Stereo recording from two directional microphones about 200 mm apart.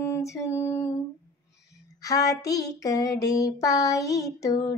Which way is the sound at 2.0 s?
15° left (ahead or behind).